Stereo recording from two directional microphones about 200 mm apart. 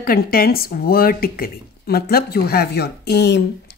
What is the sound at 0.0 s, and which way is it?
Speech, 45° left (ahead or behind).